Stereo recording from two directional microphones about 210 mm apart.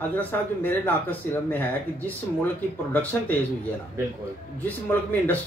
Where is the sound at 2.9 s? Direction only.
10° left (ahead or behind).